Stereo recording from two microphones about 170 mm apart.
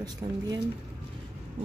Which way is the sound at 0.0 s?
25° right (ahead or behind).